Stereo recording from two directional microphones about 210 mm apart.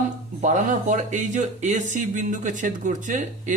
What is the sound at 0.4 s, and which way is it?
Speech, 35° right (ahead or behind).